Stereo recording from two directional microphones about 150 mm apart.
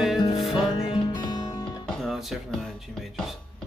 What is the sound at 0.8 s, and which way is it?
Music, 30° left (ahead or behind).